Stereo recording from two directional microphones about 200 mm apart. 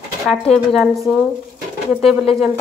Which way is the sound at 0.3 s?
Centre (ahead or behind).